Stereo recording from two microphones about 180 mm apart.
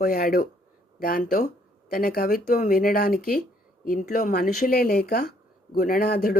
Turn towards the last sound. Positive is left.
turn(degrees=55)  # may be behind; listen again after turning